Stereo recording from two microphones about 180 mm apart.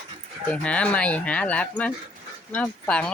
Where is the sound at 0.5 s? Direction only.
5° left (ahead or behind).